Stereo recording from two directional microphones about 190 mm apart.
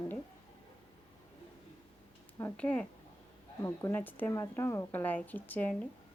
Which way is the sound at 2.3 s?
10° left (ahead or behind).